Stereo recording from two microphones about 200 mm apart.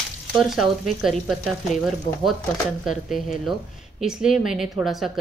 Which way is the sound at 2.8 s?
Centre (ahead or behind).